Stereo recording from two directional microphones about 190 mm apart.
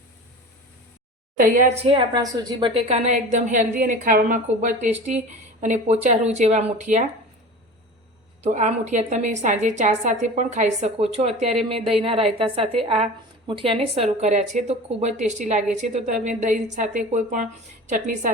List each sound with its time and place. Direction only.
1.4 s a woman's voice: 45° right (ahead or behind)
8.4 s a woman's voice: 40° right (ahead or behind)